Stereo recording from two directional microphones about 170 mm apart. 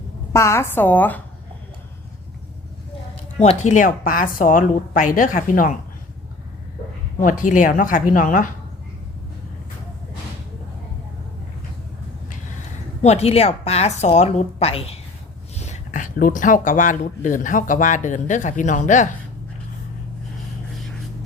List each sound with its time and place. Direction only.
0.3 s a woman's voice: 15° left (ahead or behind)
3.3 s a man's voice: 40° left (ahead or behind)
7.2 s a man's voice: 50° left (ahead or behind)
13.0 s a woman's voice: 40° left (ahead or behind)